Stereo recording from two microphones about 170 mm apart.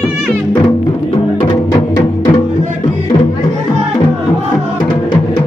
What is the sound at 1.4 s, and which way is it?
Music, 25° left (ahead or behind).